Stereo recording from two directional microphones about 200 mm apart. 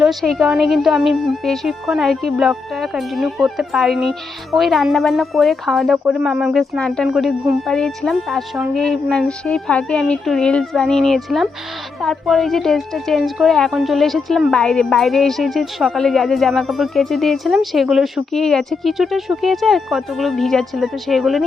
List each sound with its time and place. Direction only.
0.0 s a woman's voice: centre (ahead or behind)